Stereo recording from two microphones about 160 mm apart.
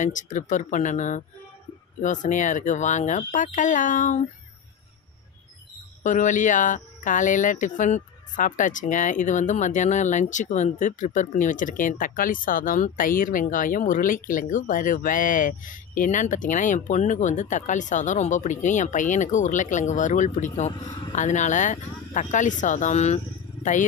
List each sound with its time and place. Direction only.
0.0 s speech: 50° left (ahead or behind)
6.0 s speech: 50° left (ahead or behind)